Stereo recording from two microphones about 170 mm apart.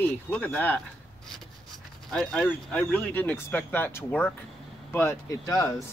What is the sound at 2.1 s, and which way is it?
Speech, 5° left (ahead or behind).